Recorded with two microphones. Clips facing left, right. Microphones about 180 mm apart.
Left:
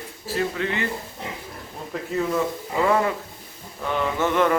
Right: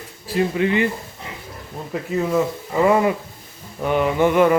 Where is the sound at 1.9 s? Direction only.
5° right (ahead or behind).